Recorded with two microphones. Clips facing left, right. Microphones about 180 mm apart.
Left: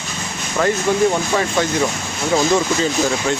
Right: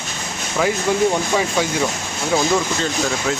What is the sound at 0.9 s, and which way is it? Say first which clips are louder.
Speech: even; 10° right (ahead or behind).